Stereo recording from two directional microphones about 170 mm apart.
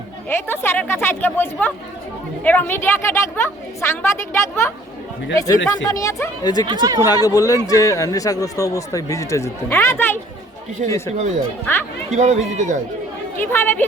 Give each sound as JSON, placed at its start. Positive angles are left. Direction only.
{"t": 0.3, "sound": "a woman's voice", "side_deg": 15}
{"t": 6.7, "sound": "speech", "side_deg": -25}
{"t": 7.1, "sound": "a man's voice", "side_deg": 20}
{"t": 12.1, "sound": "speech", "side_deg": -45}
{"t": 13.4, "sound": "a woman's voice", "side_deg": 15}